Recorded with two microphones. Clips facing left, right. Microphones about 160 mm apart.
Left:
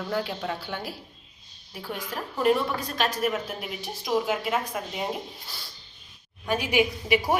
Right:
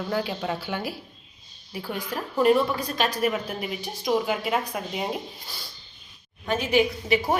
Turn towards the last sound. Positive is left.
turn(degrees=15)  # may be behind; listen again after turning